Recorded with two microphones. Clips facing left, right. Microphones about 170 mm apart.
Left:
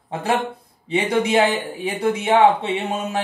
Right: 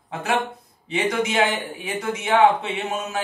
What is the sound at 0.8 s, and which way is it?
Speech, 30° left (ahead or behind).